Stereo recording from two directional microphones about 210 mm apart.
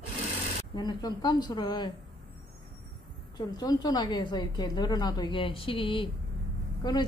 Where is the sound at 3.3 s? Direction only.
20° left (ahead or behind).